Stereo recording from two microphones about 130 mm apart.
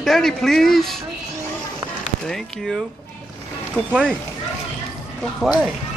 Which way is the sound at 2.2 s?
5° left (ahead or behind).